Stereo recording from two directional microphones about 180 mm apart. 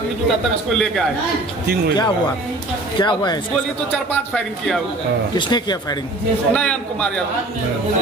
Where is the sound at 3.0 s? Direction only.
25° left (ahead or behind).